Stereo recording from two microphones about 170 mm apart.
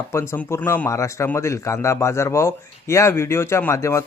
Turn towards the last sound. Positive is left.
turn(degrees=15)  # may be behind; listen again after turning